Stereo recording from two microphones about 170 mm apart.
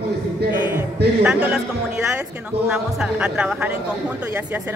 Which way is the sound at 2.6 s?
5° right (ahead or behind).